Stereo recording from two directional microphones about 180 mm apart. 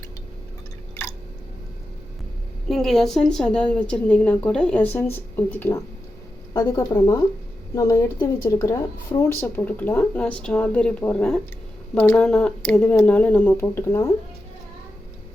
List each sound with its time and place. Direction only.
2.6 s a woman's voice: centre (ahead or behind)